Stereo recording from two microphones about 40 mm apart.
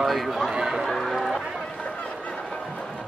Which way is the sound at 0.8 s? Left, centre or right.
Centre.